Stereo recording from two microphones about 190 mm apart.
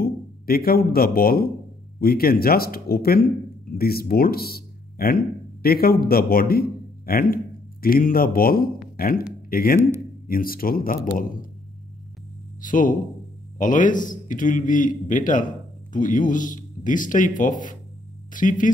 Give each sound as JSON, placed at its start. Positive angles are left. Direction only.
{"t": 0.0, "sound": "speech", "side_deg": 50}
{"t": 9.8, "sound": "a man's voice", "side_deg": -15}
{"t": 10.2, "sound": "speech", "side_deg": 50}
{"t": 12.6, "sound": "speech", "side_deg": 45}